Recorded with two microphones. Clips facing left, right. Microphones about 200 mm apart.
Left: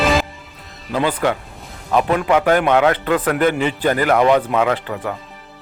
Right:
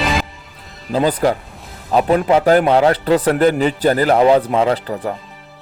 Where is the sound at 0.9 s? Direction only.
35° right (ahead or behind).